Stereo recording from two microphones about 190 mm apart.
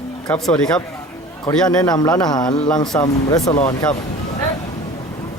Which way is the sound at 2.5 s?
5° left (ahead or behind).